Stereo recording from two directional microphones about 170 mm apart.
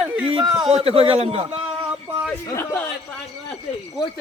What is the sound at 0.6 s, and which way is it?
Speech, 35° right (ahead or behind).